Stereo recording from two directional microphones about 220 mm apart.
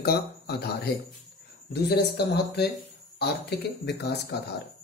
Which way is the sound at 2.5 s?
45° left (ahead or behind).